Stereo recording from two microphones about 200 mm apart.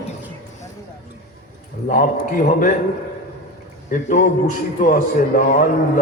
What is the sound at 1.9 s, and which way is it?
Speech, 45° left (ahead or behind).